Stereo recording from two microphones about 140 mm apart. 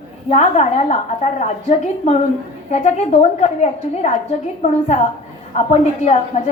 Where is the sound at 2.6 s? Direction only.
55° left (ahead or behind).